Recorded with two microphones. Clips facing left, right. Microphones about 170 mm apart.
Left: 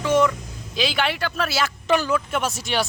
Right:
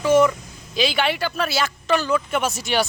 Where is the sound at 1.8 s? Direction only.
15° left (ahead or behind).